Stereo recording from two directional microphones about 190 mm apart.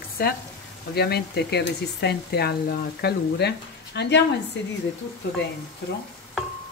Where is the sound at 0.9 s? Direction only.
60° left (ahead or behind).